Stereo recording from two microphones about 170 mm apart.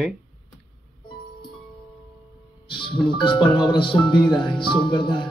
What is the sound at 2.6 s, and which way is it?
Music, 30° left (ahead or behind).